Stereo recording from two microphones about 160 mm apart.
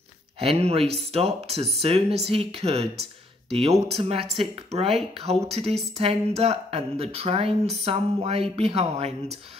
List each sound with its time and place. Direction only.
0.4 s speech: 40° right (ahead or behind)